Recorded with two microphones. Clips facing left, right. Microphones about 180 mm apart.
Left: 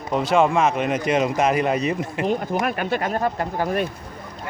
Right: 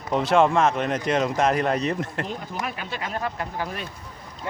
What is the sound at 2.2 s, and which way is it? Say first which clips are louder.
Speech: left 9 dB; 60° left (ahead or behind).